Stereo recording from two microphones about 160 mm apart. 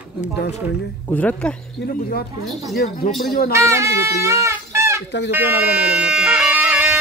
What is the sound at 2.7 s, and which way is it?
Speech, 65° left (ahead or behind).